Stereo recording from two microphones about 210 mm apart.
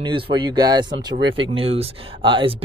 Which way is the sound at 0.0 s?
25° right (ahead or behind).